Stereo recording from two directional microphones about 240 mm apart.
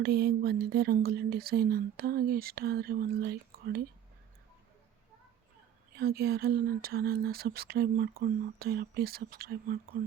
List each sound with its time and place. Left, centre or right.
0.0 s speech: right
6.0 s speech: right